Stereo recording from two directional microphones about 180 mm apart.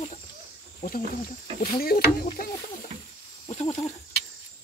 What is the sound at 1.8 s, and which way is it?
Speech, 55° left (ahead or behind).